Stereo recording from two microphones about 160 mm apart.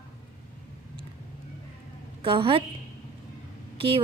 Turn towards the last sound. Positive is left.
turn(degrees=-35)  # may be behind; listen again after turning